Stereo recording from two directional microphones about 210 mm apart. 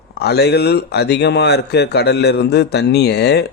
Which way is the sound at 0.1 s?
50° left (ahead or behind).